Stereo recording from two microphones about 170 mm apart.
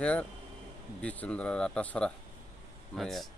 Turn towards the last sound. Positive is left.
turn(degrees=0)  # may be behind; listen again after turning